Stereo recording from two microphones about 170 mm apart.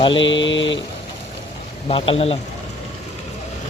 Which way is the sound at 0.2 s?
90° left.